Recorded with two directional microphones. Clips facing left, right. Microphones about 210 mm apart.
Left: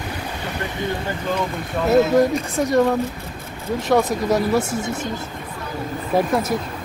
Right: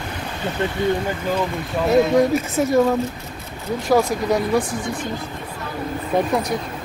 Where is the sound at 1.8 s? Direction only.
Centre (ahead or behind).